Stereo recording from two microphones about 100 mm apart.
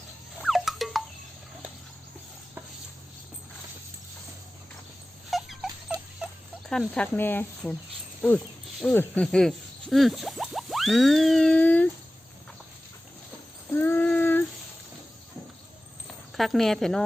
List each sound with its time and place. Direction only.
0.4 s rodents: centre (ahead or behind)
5.3 s dog: centre (ahead or behind)
6.7 s speech: 10° left (ahead or behind)
7.6 s speech: centre (ahead or behind)
8.9 s speech: 15° left (ahead or behind)
13.7 s child singing: 20° left (ahead or behind)
16.3 s speech: centre (ahead or behind)